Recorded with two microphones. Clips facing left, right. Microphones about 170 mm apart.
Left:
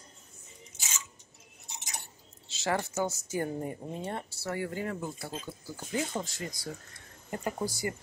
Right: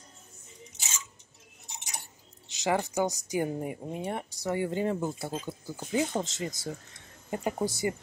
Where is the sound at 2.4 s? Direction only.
15° right (ahead or behind).